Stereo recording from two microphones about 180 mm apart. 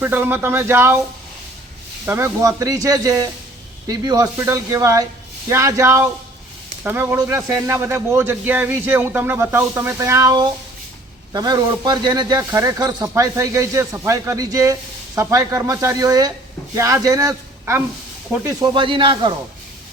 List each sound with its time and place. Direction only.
0.0 s speech: 10° right (ahead or behind)
2.0 s a man's voice: 15° right (ahead or behind)